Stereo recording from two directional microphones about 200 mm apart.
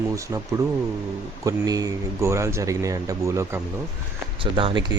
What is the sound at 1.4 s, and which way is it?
Speech, 20° right (ahead or behind).